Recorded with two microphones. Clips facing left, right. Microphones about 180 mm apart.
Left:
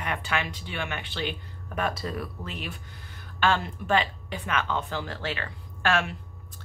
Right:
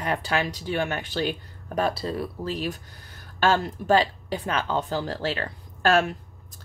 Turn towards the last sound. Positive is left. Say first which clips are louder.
# right 5 dB
turn(degrees=-40)  # may be behind; listen again after turning